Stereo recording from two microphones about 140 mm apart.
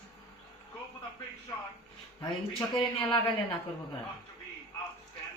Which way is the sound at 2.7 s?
5° left (ahead or behind).